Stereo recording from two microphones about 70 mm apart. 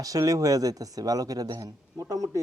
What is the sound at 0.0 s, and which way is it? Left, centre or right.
Speech, right.